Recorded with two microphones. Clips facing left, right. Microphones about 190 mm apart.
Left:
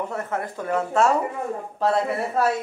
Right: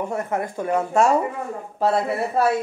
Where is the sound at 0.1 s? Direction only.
15° right (ahead or behind).